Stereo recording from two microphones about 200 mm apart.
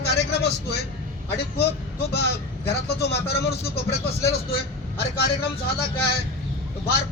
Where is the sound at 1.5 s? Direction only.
55° left (ahead or behind).